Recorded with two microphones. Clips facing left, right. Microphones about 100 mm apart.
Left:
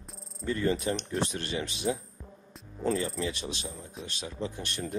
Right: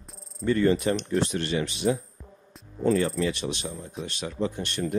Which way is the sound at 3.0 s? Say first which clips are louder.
Right 6 dB; 65° right (ahead or behind).